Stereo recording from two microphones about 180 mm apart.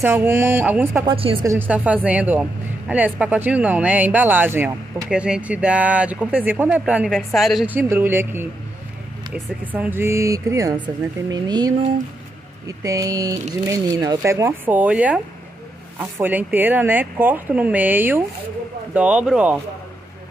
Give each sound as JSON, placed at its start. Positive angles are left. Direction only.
{"t": 0.0, "sound": "speech", "side_deg": -10}
{"t": 1.0, "sound": "speech", "side_deg": -30}
{"t": 1.4, "sound": "speech", "side_deg": -15}